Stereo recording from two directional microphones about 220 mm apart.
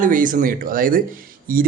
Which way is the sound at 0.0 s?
35° right (ahead or behind).